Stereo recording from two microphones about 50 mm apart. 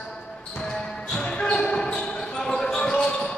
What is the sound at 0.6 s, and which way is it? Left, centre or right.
Basketball bounce, centre.